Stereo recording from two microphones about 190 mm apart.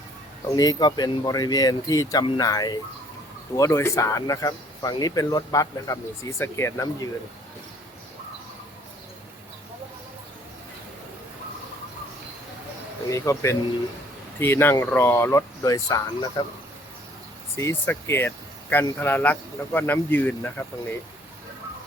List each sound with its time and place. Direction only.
0.4 s speech: 20° left (ahead or behind)
13.1 s speech: 15° left (ahead or behind)
17.6 s speech: 15° left (ahead or behind)